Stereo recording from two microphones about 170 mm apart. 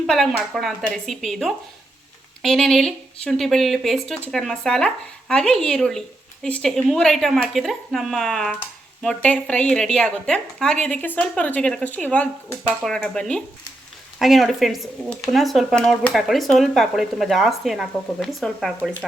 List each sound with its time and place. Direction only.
0.0 s a woman's voice: centre (ahead or behind)